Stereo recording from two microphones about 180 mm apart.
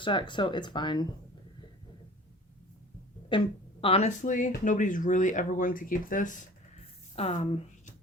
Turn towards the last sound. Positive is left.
turn(degrees=35)  # may be behind; listen again after turning